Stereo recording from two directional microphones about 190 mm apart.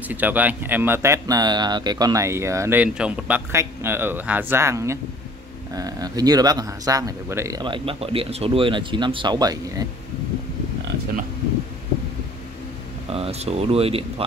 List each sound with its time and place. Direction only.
0.1 s speech: 10° right (ahead or behind)
13.1 s speech: 30° right (ahead or behind)